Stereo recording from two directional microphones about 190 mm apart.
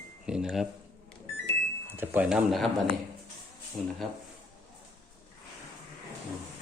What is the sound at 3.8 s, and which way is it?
Speech, 5° left (ahead or behind).